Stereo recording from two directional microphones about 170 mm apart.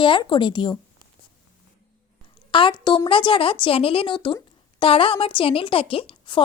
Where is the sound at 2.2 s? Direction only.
30° left (ahead or behind).